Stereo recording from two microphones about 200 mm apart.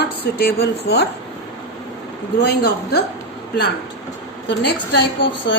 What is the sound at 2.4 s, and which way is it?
Speech, 50° left (ahead or behind).